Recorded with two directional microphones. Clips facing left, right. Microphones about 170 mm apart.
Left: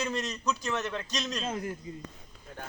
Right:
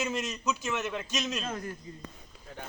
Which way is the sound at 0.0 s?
Centre (ahead or behind).